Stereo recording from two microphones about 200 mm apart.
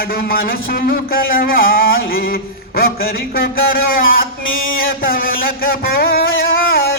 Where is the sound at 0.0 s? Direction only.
45° left (ahead or behind).